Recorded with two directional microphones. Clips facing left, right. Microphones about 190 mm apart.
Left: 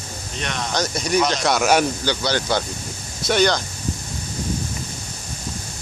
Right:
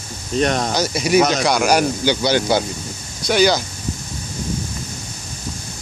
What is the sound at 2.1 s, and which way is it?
Speech, 15° right (ahead or behind).